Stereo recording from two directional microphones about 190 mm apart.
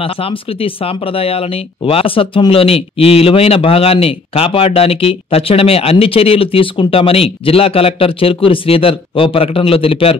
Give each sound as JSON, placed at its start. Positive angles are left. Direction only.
{"t": 0.0, "sound": "speech", "side_deg": 30}